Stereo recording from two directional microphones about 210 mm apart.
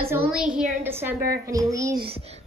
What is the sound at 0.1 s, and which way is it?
A woman's voice, 5° right (ahead or behind).